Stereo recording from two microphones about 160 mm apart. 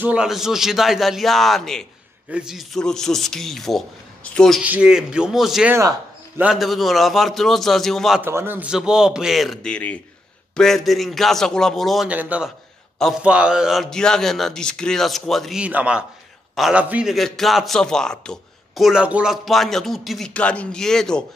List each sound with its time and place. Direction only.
0.0 s a man's voice: 5° right (ahead or behind)
5.7 s speech: 15° right (ahead or behind)
6.4 s a man's voice: centre (ahead or behind)
8.2 s a man's voice: 15° right (ahead or behind); by 21.2 s 5° left (ahead or behind)